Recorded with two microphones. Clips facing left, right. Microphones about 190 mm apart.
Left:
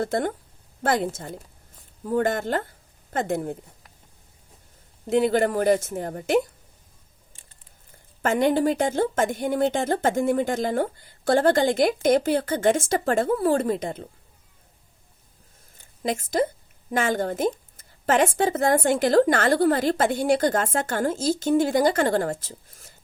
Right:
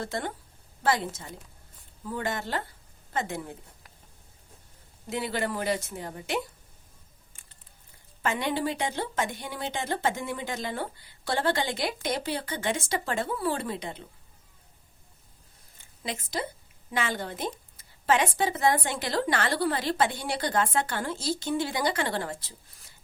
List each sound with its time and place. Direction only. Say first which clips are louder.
0.0 s a woman's voice: left 8 dB; 50° left (ahead or behind)
5.0 s a woman's voice: left 10 dB; 50° left (ahead or behind)
8.2 s a woman's voice: left 8 dB; 50° left (ahead or behind)
16.0 s a woman's voice: left 10 dB; 45° left (ahead or behind)